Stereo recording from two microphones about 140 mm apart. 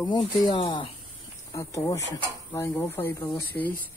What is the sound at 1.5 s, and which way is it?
Speech, 20° left (ahead or behind).